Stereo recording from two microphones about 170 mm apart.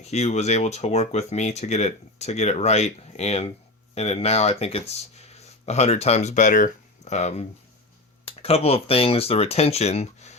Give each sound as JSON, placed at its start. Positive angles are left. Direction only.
{"t": 0.0, "sound": "speech", "side_deg": 40}